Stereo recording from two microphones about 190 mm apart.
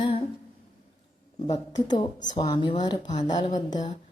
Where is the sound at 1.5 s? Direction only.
20° left (ahead or behind).